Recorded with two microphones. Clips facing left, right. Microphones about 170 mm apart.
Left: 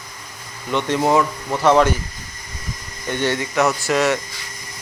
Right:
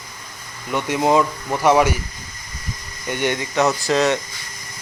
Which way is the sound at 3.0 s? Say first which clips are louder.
Left 1 dB; 15° right (ahead or behind).